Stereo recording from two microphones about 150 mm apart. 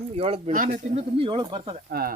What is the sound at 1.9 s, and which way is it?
Speech, 90° right.